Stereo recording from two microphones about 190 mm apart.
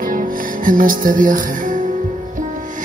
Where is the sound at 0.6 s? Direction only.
45° right (ahead or behind).